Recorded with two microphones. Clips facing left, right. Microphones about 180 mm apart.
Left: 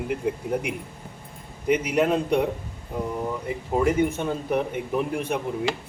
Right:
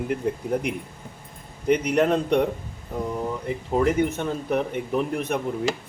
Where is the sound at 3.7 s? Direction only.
10° left (ahead or behind).